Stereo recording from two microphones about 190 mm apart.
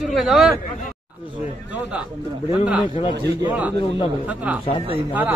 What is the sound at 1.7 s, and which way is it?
A man's voice, 5° right (ahead or behind).